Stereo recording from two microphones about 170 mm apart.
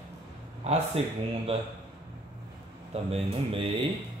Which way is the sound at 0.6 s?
40° right (ahead or behind).